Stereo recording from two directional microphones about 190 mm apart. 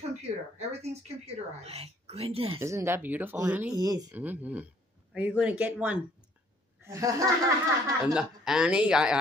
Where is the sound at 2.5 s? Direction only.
15° right (ahead or behind).